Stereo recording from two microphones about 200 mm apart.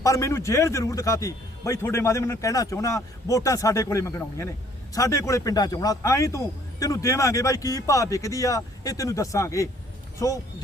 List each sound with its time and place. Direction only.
0.0 s speech: 15° left (ahead or behind)